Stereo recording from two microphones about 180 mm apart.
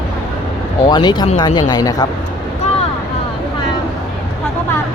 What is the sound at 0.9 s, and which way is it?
A woman's voice, 25° left (ahead or behind).